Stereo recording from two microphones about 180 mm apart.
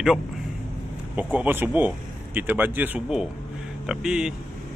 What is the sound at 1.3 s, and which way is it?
Speech, 10° right (ahead or behind).